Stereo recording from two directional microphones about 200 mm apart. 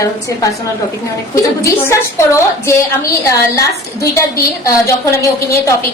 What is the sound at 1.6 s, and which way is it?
A woman's voice, 15° left (ahead or behind).